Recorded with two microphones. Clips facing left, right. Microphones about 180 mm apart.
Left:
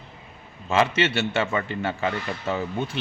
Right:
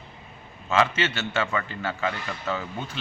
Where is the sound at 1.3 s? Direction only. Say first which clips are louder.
Left 2 dB; 25° left (ahead or behind).